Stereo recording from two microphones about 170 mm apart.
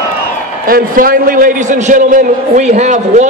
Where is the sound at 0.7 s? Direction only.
60° right (ahead or behind).